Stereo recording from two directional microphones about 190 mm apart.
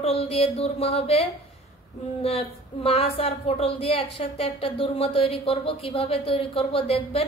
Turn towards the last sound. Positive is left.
turn(degrees=30)  # may be behind; listen again after turning